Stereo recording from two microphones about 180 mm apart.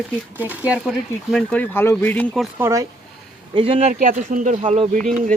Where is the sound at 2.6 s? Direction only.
15° right (ahead or behind).